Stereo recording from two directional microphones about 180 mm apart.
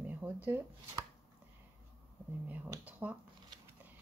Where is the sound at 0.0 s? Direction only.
10° right (ahead or behind).